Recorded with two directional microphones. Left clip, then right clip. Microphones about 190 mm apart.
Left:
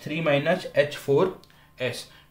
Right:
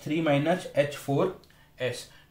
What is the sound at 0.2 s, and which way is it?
Speech, 35° left (ahead or behind).